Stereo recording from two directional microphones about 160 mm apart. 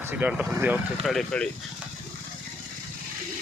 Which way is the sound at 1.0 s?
Centre (ahead or behind).